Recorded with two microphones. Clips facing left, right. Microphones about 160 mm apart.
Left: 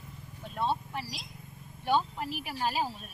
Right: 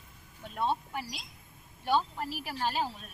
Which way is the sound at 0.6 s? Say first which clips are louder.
Even; 5° right (ahead or behind).